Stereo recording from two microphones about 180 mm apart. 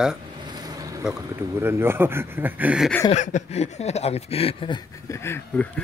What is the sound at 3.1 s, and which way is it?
Speech, 40° left (ahead or behind).